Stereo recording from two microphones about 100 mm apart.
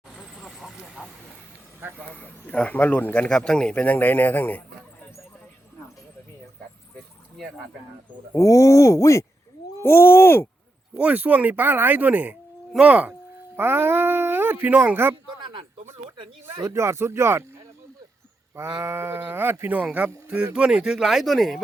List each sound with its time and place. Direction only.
0.2 s vehicle: 5° left (ahead or behind)
1.0 s vehicle: 10° right (ahead or behind)
2.1 s speech: 15° left (ahead or behind)
8.4 s speech: 35° left (ahead or behind)
10.9 s speech: 15° right (ahead or behind)
15.1 s a sound: 50° right (ahead or behind)
16.6 s speech: 30° right (ahead or behind)
18.5 s speech: 30° right (ahead or behind); by 21.6 s centre (ahead or behind)